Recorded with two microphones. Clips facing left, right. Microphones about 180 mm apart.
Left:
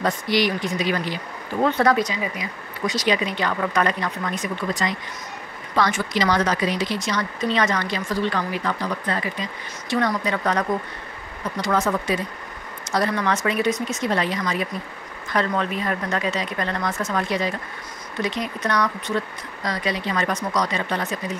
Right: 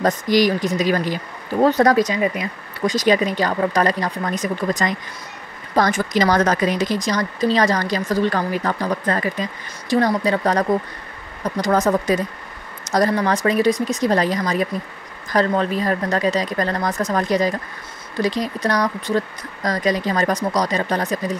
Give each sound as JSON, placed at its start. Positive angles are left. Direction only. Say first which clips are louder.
{"t": 0.0, "sound": "speech", "louder": "right 5 dB", "side_deg": -40}